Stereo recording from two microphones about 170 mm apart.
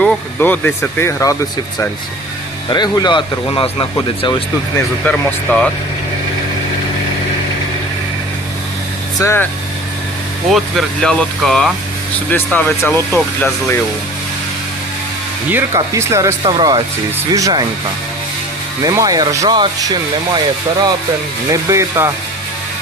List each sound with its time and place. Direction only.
0.0 s speech: 10° left (ahead or behind)
2.6 s speech: 25° left (ahead or behind)
5.0 s speech: 5° left (ahead or behind)
9.2 s speech: 15° left (ahead or behind)
10.5 s speech: centre (ahead or behind)
15.5 s speech: 15° right (ahead or behind)
16.4 s speech: 30° right (ahead or behind)
18.8 s speech: 20° right (ahead or behind)
21.5 s speech: 15° right (ahead or behind)